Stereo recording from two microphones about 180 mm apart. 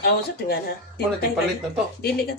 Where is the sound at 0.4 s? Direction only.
60° left (ahead or behind).